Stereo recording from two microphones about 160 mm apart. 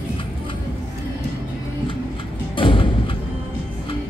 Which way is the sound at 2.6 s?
30° left (ahead or behind).